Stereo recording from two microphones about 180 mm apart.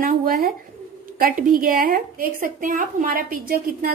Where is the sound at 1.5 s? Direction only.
55° right (ahead or behind).